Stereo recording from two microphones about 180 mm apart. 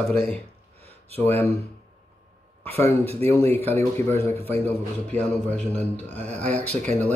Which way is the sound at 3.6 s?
10° left (ahead or behind).